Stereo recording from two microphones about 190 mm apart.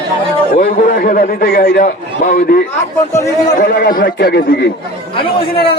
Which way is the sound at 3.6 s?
50° left (ahead or behind).